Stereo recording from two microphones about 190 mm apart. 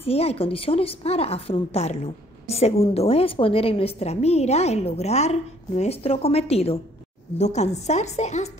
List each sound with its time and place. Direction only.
0.0 s a woman's voice: 30° left (ahead or behind)